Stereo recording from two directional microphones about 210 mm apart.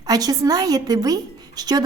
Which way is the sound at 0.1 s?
15° right (ahead or behind).